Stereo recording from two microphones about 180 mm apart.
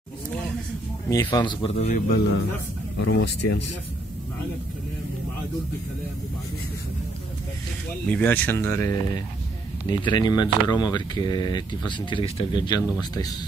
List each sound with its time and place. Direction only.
1.1 s speech: 20° left (ahead or behind); by 2.0 s 35° left (ahead or behind)
3.0 s speech: 70° left (ahead or behind)
8.1 s speech: 10° left (ahead or behind); by 12.8 s 25° left (ahead or behind)